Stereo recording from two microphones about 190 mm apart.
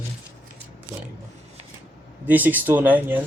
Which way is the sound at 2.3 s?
10° right (ahead or behind).